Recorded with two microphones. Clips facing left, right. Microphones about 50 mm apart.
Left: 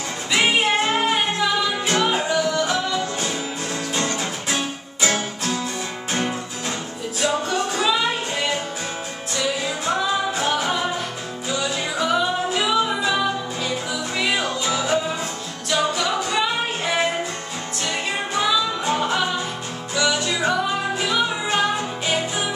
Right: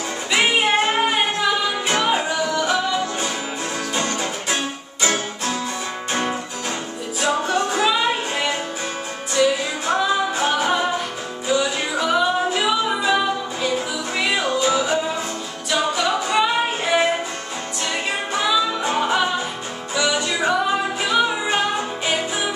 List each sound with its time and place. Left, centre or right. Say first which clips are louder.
0.3 s music: right 1 dB; centre
2.6 s music: right 2 dB; right
7.2 s music: right 2 dB; right
10.3 s music: right 2 dB; centre
18.3 s music: right 1 dB; centre